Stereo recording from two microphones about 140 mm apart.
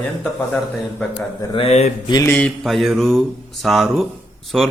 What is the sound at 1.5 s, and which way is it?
Speech, 50° left (ahead or behind).